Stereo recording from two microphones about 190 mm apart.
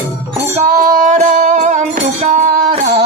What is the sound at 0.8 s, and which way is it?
Music, 45° right (ahead or behind).